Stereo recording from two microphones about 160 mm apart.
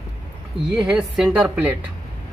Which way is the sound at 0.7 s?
5° right (ahead or behind).